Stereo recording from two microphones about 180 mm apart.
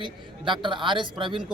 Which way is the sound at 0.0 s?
25° right (ahead or behind).